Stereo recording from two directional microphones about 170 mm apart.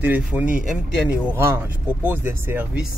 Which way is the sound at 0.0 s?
10° right (ahead or behind).